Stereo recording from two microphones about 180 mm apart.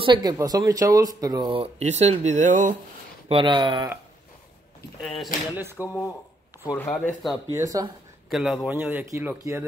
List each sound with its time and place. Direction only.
0.0 s speech: 25° right (ahead or behind); by 2.7 s 45° right (ahead or behind)
3.3 s speech: 25° right (ahead or behind)
5.0 s speech: centre (ahead or behind)
5.8 s speech: 15° left (ahead or behind)
7.5 s speech: 20° right (ahead or behind)
8.3 s speech: centre (ahead or behind)